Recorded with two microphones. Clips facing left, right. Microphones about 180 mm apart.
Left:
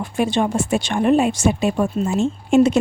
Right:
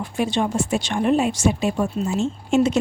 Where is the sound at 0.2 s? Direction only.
55° left (ahead or behind).